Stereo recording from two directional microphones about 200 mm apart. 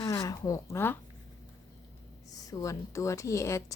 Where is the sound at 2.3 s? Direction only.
15° left (ahead or behind).